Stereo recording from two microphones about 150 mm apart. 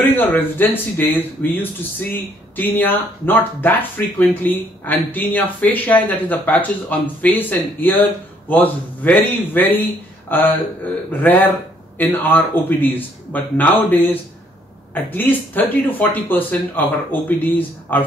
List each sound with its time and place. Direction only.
0.0 s speech: 15° left (ahead or behind)